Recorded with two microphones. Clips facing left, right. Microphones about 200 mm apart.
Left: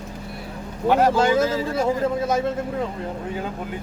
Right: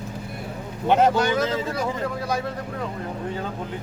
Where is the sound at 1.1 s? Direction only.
25° left (ahead or behind).